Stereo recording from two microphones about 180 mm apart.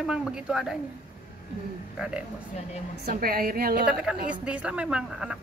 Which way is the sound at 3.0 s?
55° right (ahead or behind).